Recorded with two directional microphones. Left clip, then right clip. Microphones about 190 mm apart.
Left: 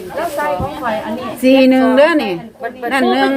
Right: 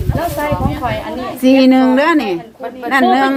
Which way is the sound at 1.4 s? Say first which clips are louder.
Even; 10° right (ahead or behind).